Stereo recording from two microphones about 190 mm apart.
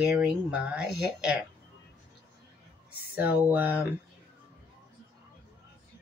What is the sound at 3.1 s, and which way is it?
Speech, 10° right (ahead or behind).